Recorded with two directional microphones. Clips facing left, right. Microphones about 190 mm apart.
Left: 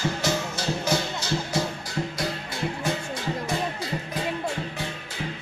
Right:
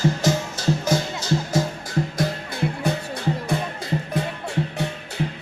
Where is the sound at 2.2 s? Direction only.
55° right (ahead or behind).